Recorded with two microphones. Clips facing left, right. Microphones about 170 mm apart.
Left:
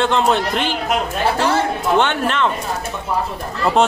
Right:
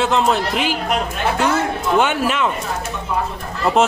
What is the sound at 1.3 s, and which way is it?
Speech, 30° left (ahead or behind).